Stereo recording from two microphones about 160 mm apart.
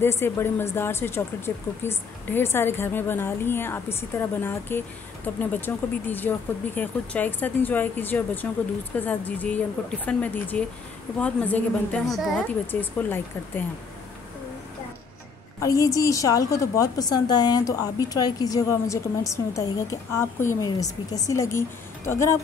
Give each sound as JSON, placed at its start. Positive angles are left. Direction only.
{"t": 0.0, "sound": "a woman's voice", "side_deg": 15}
{"t": 15.6, "sound": "a woman's voice", "side_deg": 20}